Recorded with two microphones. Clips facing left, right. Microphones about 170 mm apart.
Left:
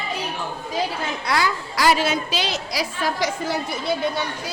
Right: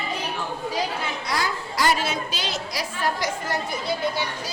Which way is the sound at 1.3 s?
75° left (ahead or behind).